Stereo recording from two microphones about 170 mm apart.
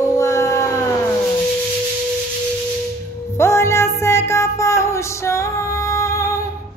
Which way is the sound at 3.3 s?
15° left (ahead or behind).